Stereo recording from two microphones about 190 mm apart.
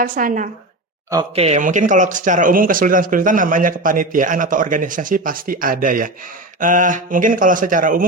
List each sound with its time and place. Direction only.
0.0 s speech: 45° right (ahead or behind)